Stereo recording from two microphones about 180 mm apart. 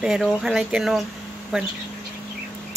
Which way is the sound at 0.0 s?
5° right (ahead or behind).